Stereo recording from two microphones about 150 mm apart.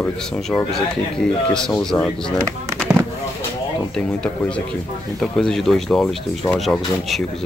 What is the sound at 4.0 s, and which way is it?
Speech, 5° left (ahead or behind).